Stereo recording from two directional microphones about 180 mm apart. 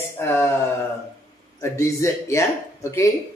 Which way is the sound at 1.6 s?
15° left (ahead or behind).